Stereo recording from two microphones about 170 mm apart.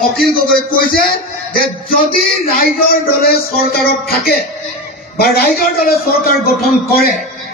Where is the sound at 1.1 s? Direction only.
60° left (ahead or behind).